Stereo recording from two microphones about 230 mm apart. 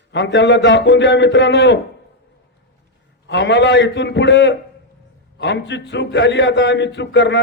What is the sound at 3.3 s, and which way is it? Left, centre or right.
A man's voice, left.